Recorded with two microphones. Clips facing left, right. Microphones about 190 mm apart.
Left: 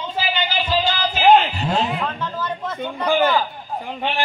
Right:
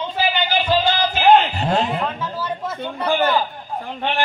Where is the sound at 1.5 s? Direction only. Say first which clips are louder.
Right 2 dB; 45° right (ahead or behind).